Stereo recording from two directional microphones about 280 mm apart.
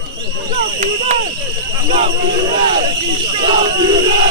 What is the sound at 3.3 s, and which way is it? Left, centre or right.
Battle cry, centre.